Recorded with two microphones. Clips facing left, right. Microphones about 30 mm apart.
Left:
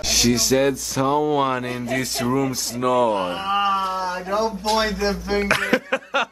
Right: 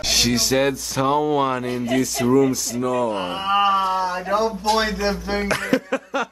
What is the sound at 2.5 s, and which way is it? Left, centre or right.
Speech, left.